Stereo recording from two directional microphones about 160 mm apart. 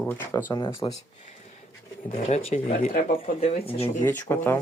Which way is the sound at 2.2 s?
45° left (ahead or behind).